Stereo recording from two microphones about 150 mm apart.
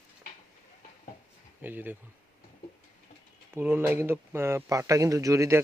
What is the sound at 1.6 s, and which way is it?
Speech, 15° right (ahead or behind).